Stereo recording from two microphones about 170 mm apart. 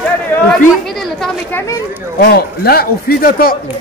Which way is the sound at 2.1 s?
65° left (ahead or behind).